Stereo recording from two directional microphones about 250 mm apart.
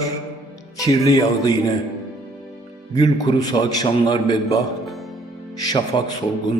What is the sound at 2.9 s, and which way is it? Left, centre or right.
A man's voice, centre.